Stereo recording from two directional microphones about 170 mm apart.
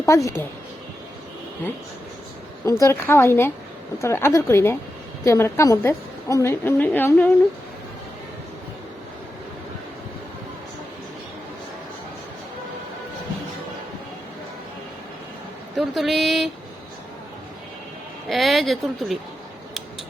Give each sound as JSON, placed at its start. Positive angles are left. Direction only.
{"t": 0.0, "sound": "speech", "side_deg": 20}
{"t": 2.8, "sound": "a woman's voice", "side_deg": 15}
{"t": 15.7, "sound": "speech", "side_deg": 0}
{"t": 18.3, "sound": "a woman's voice", "side_deg": 0}